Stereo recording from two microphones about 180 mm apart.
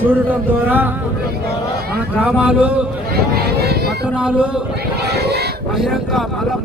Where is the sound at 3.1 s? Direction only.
60° right (ahead or behind).